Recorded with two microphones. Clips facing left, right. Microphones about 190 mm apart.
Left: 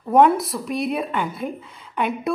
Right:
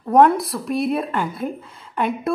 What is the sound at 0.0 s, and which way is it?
Speech, centre (ahead or behind).